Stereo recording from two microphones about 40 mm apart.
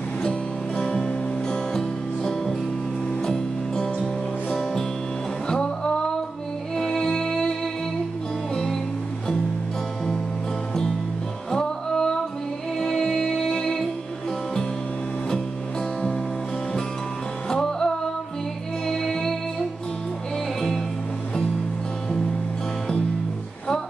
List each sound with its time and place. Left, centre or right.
0.2 s music: left
11.5 s music: centre
17.5 s music: centre